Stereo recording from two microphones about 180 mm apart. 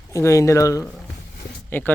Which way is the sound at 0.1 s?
15° left (ahead or behind).